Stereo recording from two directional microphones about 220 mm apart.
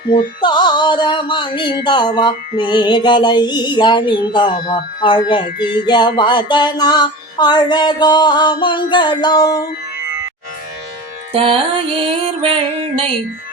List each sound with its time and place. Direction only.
0.4 s music: 20° left (ahead or behind)
11.3 s music: 25° right (ahead or behind)